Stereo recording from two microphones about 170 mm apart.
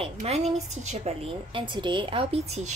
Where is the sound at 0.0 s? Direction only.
40° right (ahead or behind).